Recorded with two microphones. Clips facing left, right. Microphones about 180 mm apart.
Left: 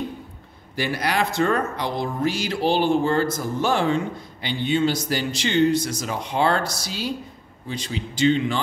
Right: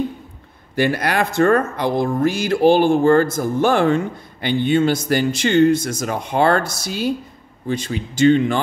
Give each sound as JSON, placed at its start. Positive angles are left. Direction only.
{"t": 0.7, "sound": "speech", "side_deg": -55}